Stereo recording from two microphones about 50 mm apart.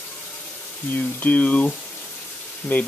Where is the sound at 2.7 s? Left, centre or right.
Left.